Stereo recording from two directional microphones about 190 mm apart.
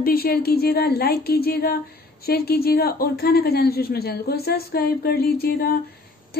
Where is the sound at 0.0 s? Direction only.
50° left (ahead or behind).